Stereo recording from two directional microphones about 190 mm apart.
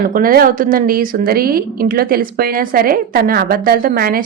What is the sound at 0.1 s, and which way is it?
A woman's voice, 50° right (ahead or behind).